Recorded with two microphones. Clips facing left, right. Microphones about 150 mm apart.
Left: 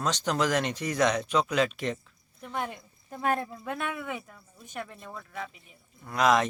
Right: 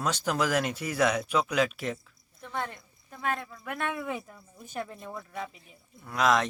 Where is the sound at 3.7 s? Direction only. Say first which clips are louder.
Right 1 dB; 15° left (ahead or behind).